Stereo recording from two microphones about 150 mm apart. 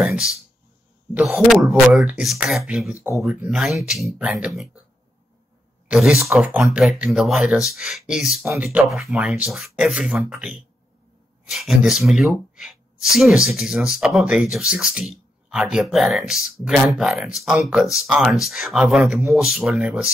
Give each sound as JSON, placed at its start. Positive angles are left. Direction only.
{"t": 0.0, "sound": "speech", "side_deg": -5}
{"t": 5.9, "sound": "speech", "side_deg": -5}